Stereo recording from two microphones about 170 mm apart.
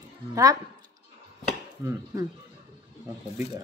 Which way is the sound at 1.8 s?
15° right (ahead or behind).